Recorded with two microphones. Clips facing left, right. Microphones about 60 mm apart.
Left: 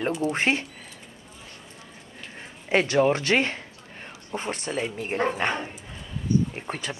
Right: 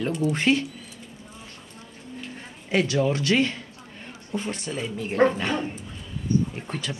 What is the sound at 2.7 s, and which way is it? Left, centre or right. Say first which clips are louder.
Speech: left 2 dB; left.